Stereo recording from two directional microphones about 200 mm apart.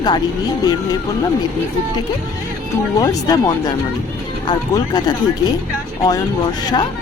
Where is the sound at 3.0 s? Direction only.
20° left (ahead or behind).